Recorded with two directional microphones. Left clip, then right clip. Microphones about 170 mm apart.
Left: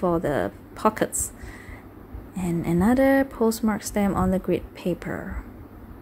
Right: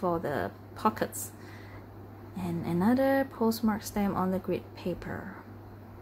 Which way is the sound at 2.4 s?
30° left (ahead or behind).